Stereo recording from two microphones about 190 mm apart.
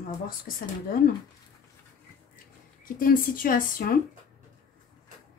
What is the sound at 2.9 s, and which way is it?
A woman's voice, 50° left (ahead or behind).